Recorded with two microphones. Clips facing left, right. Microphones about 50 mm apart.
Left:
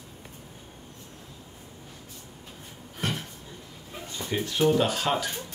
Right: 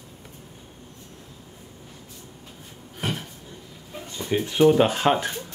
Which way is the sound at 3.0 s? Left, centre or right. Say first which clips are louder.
Right 2 dB; centre.